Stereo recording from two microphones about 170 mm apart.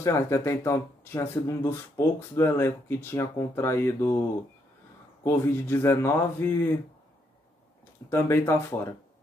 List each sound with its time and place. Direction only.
0.0 s speech: 15° left (ahead or behind)
5.2 s speech: 15° left (ahead or behind)
8.1 s speech: 15° left (ahead or behind)